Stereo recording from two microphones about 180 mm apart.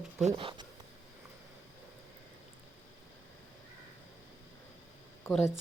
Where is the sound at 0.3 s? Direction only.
30° right (ahead or behind).